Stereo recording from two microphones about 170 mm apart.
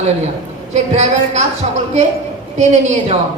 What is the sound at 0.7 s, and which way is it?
A woman's voice, 45° right (ahead or behind).